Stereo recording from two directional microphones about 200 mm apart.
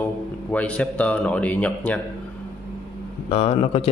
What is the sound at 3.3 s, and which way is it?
Speech, 30° left (ahead or behind).